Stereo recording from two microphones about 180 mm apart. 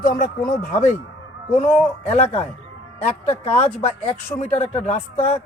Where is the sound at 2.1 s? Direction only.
35° left (ahead or behind).